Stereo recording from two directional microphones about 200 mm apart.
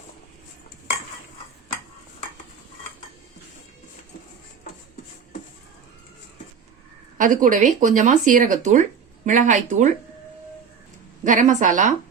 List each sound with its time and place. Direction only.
7.2 s speech: 40° right (ahead or behind)
11.2 s speech: 40° right (ahead or behind)